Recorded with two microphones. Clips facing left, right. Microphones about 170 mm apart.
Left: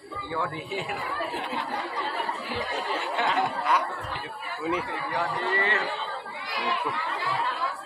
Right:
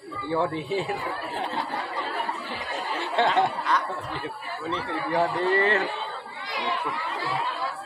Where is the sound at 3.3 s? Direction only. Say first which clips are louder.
Right 2 dB; 10° left (ahead or behind).